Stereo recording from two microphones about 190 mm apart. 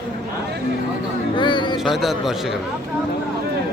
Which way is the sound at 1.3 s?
25° left (ahead or behind).